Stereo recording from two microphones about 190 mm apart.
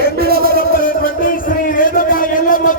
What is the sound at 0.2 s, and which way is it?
Music, 50° right (ahead or behind).